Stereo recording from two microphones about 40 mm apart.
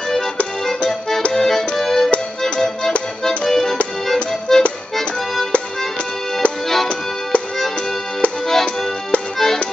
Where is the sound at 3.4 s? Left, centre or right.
Centre.